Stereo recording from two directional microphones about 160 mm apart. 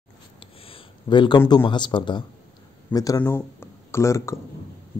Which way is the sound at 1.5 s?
30° left (ahead or behind).